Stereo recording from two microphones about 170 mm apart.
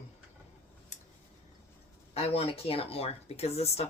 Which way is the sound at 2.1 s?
35° left (ahead or behind).